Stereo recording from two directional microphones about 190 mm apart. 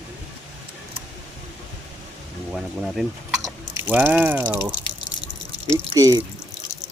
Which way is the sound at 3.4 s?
10° right (ahead or behind).